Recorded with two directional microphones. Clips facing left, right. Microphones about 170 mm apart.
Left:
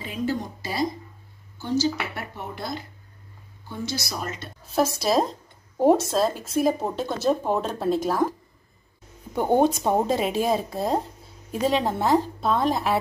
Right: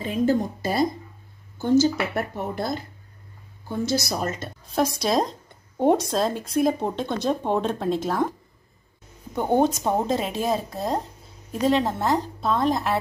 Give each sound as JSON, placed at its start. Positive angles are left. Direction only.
{"t": 0.0, "sound": "speech", "side_deg": -45}
{"t": 4.1, "sound": "speech", "side_deg": -40}
{"t": 4.6, "sound": "speech", "side_deg": 5}